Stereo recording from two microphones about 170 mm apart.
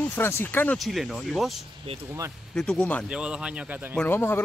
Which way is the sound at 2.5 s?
5° left (ahead or behind).